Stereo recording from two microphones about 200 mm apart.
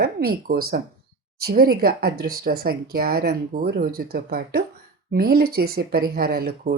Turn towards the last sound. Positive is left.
turn(degrees=-50)  # may be behind; listen again after turning